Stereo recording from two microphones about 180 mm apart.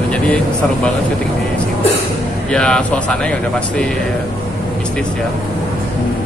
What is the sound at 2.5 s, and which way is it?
A man's voice, 5° left (ahead or behind).